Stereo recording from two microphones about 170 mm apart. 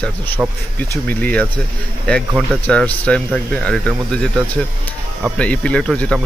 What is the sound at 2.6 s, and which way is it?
Speech, 10° left (ahead or behind).